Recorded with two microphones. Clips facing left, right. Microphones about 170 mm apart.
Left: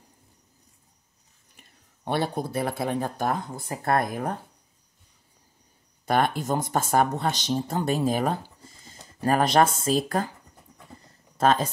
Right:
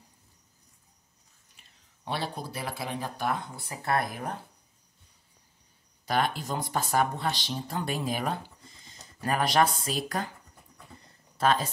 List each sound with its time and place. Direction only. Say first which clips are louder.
1.6 s speech: left 5 dB; 55° left (ahead or behind)
6.0 s speech: left 5 dB; 50° left (ahead or behind)
8.9 s a sound: left 6 dB; 35° left (ahead or behind)
10.0 s speech: left 5 dB; 45° left (ahead or behind)
11.3 s speech: left 4 dB; 45° left (ahead or behind)